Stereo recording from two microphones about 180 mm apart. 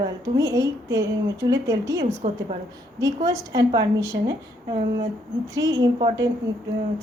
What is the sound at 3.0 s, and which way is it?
A woman's voice, 20° right (ahead or behind).